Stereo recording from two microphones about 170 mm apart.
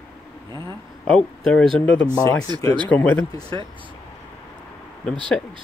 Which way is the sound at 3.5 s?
30° right (ahead or behind).